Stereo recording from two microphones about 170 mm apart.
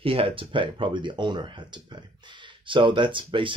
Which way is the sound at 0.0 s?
30° right (ahead or behind).